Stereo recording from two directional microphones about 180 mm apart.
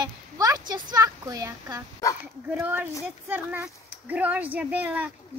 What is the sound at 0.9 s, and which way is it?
A child's voice, 20° right (ahead or behind).